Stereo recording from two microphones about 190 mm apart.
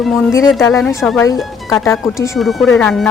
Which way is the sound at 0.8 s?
Centre (ahead or behind).